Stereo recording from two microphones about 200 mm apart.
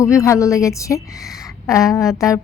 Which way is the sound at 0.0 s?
15° left (ahead or behind).